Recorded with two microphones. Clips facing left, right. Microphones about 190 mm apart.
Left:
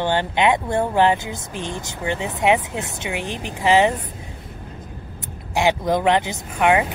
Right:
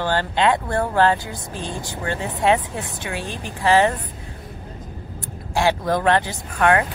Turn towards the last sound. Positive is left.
turn(degrees=15)  # may be behind; listen again after turning